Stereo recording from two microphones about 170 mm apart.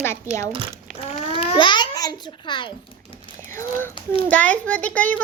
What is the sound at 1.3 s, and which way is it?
A child's voice, 35° left (ahead or behind).